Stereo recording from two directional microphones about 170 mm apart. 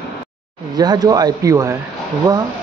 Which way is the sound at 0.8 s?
25° right (ahead or behind).